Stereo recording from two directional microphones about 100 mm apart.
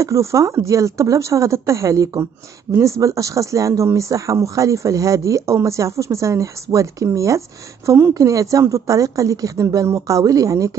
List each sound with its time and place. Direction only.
0.0 s speech: 30° right (ahead or behind)